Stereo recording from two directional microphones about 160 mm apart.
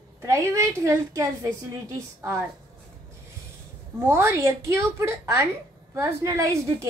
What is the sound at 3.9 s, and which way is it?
A woman's voice, 15° right (ahead or behind).